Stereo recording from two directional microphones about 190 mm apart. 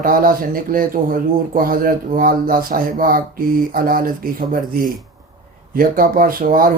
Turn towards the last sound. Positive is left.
turn(degrees=-45)  # may be behind; listen again after turning